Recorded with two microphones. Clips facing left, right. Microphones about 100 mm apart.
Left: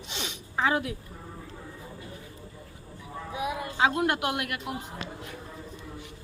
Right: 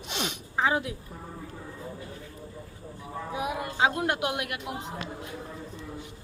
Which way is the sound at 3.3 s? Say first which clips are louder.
Even; 50° right (ahead or behind).